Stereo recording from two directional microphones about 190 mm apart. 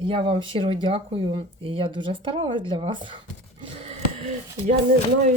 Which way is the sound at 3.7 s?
35° right (ahead or behind).